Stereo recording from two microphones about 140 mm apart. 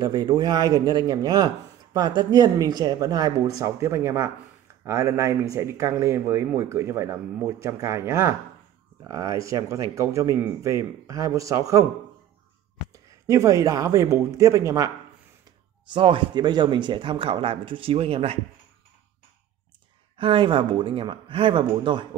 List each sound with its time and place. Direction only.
0.0 s speech: 30° right (ahead or behind)
12.9 s speech: 20° right (ahead or behind)
15.9 s speech: 35° right (ahead or behind)
20.2 s speech: 40° right (ahead or behind)